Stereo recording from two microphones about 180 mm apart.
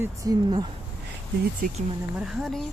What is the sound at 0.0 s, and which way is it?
Speech, 20° right (ahead or behind).